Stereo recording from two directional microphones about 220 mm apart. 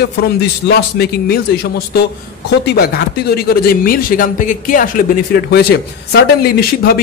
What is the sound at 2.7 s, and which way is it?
A man's voice, 45° left (ahead or behind).